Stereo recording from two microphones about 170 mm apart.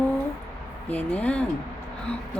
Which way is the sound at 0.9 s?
10° left (ahead or behind).